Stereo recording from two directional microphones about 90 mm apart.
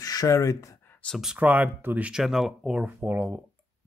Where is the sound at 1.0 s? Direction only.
15° left (ahead or behind).